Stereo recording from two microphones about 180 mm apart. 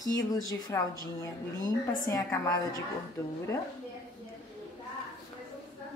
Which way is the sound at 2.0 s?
20° left (ahead or behind).